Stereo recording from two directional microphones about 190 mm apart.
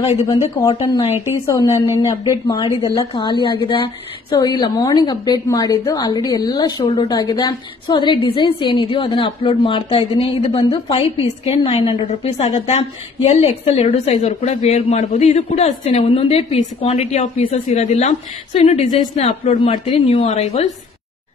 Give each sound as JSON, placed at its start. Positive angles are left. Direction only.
{"t": 0.6, "sound": "a woman's voice", "side_deg": 20}